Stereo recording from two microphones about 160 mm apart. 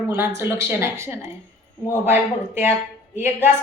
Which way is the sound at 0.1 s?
15° right (ahead or behind).